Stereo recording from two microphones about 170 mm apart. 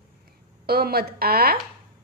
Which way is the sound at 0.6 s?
65° right (ahead or behind).